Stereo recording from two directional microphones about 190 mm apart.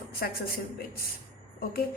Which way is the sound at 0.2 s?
50° left (ahead or behind).